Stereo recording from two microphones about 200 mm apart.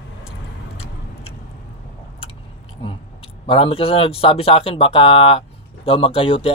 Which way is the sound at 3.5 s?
30° left (ahead or behind).